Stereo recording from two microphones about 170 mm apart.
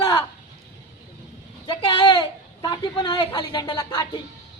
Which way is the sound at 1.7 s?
25° left (ahead or behind).